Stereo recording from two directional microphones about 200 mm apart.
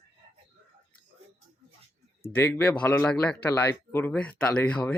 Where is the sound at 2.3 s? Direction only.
10° left (ahead or behind).